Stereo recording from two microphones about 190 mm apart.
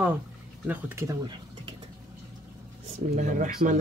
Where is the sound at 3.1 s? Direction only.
45° right (ahead or behind).